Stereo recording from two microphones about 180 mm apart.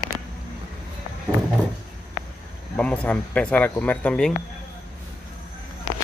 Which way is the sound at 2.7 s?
5° left (ahead or behind).